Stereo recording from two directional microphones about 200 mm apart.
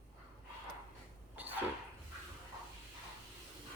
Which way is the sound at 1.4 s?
10° right (ahead or behind).